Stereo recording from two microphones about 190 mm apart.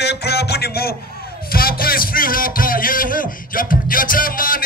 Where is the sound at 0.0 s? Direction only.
60° left (ahead or behind).